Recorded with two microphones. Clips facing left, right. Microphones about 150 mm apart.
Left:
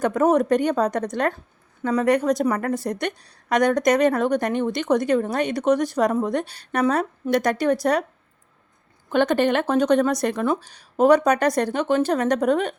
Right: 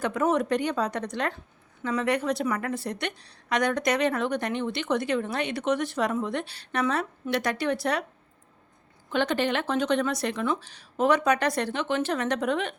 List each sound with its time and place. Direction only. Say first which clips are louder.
0.0 s a woman's voice: left 6 dB; 45° left (ahead or behind)
9.0 s a woman's voice: left 6 dB; 50° left (ahead or behind)